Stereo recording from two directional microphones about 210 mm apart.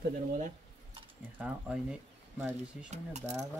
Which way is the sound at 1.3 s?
5° right (ahead or behind).